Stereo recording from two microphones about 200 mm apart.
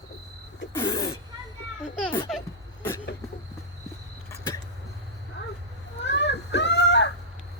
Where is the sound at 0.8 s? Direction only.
20° left (ahead or behind).